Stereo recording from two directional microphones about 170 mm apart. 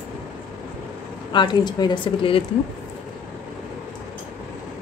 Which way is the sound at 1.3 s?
25° left (ahead or behind).